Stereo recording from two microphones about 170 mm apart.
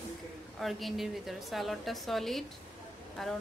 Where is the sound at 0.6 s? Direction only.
Centre (ahead or behind).